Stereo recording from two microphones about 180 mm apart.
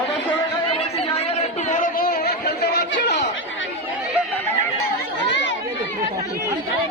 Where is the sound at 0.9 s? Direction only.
35° left (ahead or behind); by 3.2 s 70° left (ahead or behind).